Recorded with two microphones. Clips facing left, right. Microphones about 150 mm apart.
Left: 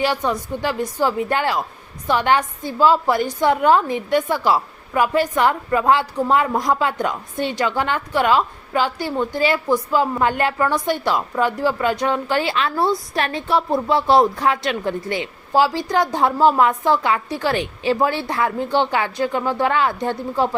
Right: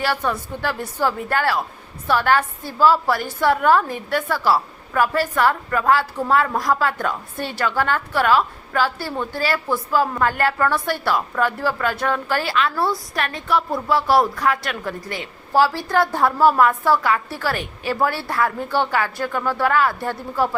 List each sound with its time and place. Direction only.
0.0 s a woman's voice: 15° left (ahead or behind)